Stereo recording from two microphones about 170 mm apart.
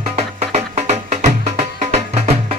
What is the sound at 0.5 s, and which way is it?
Music, 40° right (ahead or behind).